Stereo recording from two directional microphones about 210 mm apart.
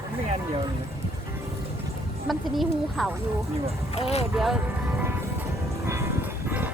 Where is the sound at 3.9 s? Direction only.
30° left (ahead or behind).